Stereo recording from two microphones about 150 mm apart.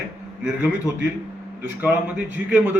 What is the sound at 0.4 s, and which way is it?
A man's voice, 10° right (ahead or behind).